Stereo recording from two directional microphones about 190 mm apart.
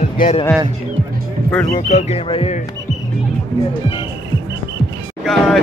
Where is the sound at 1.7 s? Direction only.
35° left (ahead or behind).